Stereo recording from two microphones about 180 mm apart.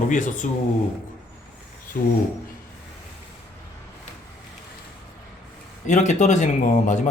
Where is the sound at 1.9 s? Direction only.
60° left (ahead or behind).